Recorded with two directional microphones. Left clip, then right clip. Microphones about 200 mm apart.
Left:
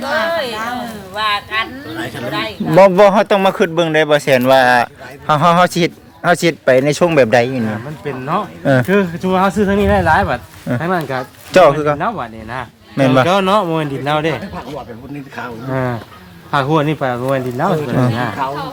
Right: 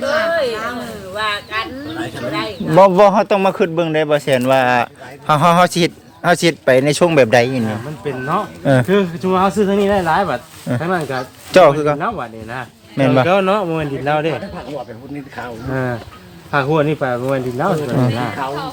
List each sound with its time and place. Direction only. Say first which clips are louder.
0.0 s a sound: right 1 dB; 40° left (ahead or behind)
1.1 s speech: left 3 dB; 40° left (ahead or behind)
2.7 s a man's voice: left 1 dB; 5° left (ahead or behind)
8.0 s speech: even; 25° left (ahead or behind)
8.6 s a man's voice: left 1 dB; centre (ahead or behind)
8.9 s speech: left 1 dB; 25° left (ahead or behind)
11.5 s a man's voice: even; centre (ahead or behind)
11.9 s a man's voice: left 2 dB; 45° left (ahead or behind)
18.2 s speech: left 3 dB; 35° left (ahead or behind)